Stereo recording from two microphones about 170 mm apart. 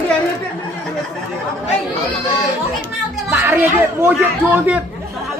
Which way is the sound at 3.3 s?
10° right (ahead or behind).